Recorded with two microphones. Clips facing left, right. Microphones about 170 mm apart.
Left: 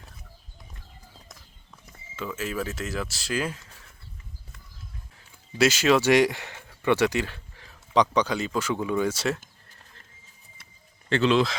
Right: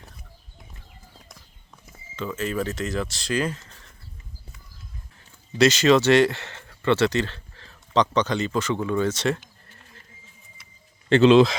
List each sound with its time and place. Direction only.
2.1 s speech: 5° left (ahead or behind)
5.5 s speech: 5° left (ahead or behind)
11.1 s speech: 25° right (ahead or behind)